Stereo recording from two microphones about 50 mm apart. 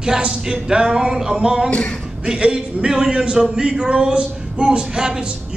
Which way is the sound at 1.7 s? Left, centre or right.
Left.